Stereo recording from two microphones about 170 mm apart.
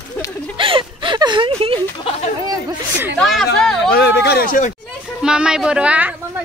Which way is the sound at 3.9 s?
75° left (ahead or behind).